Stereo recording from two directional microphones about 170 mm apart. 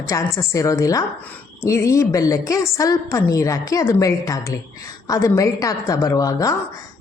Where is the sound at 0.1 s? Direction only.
20° left (ahead or behind).